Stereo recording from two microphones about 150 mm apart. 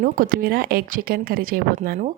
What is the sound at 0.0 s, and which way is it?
Speech, 70° right (ahead or behind).